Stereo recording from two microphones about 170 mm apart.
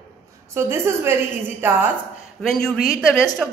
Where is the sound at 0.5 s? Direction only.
15° right (ahead or behind).